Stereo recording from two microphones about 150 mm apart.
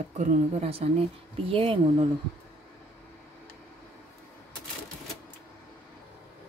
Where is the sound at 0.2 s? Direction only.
50° right (ahead or behind).